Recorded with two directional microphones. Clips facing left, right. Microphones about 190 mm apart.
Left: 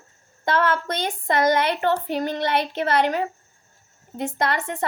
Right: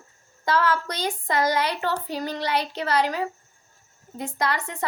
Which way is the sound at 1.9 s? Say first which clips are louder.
Left 5 dB; 20° left (ahead or behind).